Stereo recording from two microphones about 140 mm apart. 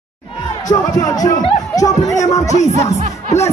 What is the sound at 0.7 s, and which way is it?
Speech, 25° left (ahead or behind).